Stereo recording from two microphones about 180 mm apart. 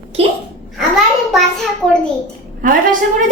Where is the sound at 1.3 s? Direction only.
Centre (ahead or behind).